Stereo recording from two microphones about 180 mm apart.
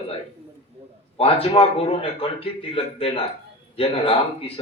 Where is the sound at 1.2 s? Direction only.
30° left (ahead or behind).